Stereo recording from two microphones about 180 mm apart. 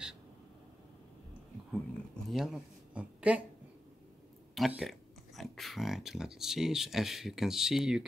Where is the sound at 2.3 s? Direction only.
Centre (ahead or behind).